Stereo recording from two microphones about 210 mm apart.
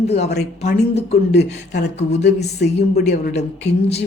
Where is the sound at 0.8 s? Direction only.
30° left (ahead or behind).